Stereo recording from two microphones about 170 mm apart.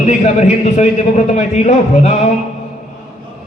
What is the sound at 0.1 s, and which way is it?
A man's voice, 40° left (ahead or behind).